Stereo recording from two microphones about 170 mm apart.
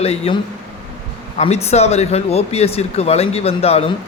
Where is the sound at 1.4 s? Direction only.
40° left (ahead or behind).